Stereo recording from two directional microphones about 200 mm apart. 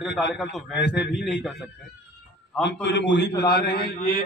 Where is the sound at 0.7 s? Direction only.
60° left (ahead or behind).